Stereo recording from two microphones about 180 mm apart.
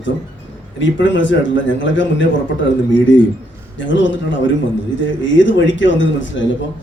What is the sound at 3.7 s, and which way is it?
A man's voice, 90° left.